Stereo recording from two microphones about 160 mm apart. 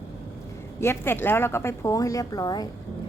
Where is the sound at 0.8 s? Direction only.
15° left (ahead or behind).